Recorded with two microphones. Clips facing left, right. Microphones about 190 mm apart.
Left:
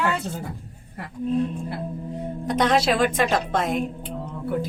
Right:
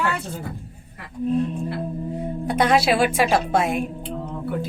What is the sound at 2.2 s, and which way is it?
A woman's voice, 10° right (ahead or behind).